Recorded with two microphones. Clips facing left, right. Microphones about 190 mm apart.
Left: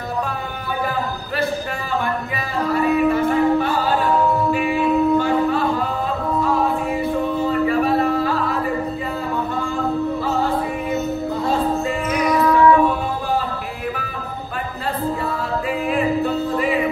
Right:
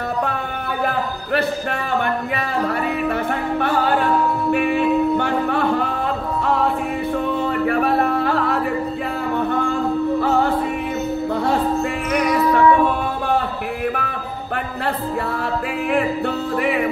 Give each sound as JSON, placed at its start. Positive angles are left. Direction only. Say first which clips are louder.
{"t": 2.7, "sound": "music", "louder": "left 4 dB", "side_deg": -65}
{"t": 7.3, "sound": "a sound", "louder": "left 2 dB", "side_deg": -60}
{"t": 12.1, "sound": "music", "louder": "even", "side_deg": -65}
{"t": 15.9, "sound": "music", "louder": "even", "side_deg": -70}